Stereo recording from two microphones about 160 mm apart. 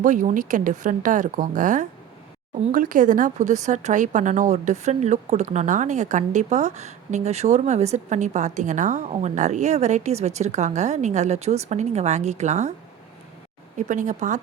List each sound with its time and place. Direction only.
0.0 s a woman's voice: 50° right (ahead or behind)
13.7 s a woman's voice: 50° right (ahead or behind)